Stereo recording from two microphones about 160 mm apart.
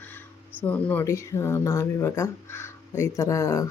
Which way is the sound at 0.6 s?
10° left (ahead or behind).